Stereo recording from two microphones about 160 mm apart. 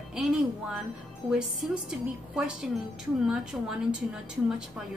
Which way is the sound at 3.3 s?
5° right (ahead or behind).